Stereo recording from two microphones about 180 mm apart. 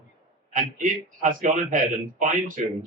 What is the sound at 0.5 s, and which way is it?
Speech, 50° right (ahead or behind).